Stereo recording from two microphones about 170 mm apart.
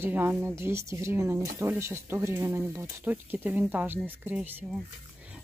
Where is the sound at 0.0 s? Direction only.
10° right (ahead or behind).